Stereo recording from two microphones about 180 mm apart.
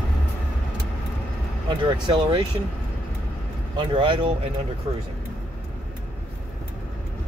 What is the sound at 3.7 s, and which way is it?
Speech, 30° right (ahead or behind).